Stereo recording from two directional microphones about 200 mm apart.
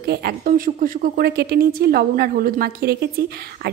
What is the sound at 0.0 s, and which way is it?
Speech, 55° right (ahead or behind).